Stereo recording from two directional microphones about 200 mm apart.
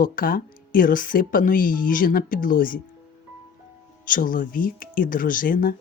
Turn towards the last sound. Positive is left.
turn(degrees=45)  # may be behind; listen again after turning